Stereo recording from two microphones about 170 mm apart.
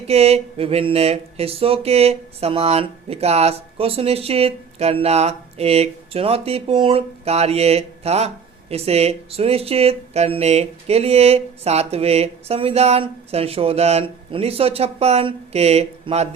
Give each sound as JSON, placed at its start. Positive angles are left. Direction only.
{"t": 0.1, "sound": "speech", "side_deg": -35}